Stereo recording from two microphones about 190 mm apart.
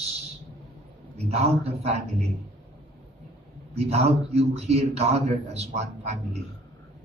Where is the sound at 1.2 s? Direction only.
30° right (ahead or behind).